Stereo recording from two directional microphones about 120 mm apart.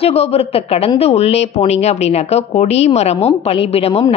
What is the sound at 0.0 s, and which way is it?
A woman's voice, 60° left (ahead or behind).